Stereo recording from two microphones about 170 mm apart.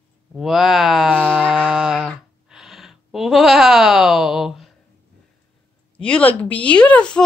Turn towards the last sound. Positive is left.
turn(degrees=5)  # may be behind; listen again after turning